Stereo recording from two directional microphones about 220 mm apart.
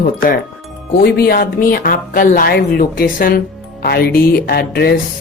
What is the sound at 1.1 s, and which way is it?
A woman's voice, 45° left (ahead or behind).